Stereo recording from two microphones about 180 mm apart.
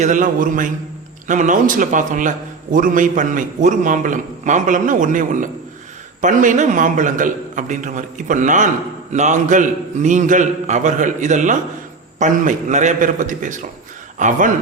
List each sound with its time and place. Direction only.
0.0 s a man's voice: 45° right (ahead or behind)